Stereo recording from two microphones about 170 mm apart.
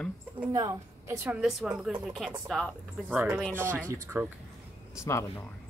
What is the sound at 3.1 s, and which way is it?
Speech, 15° right (ahead or behind).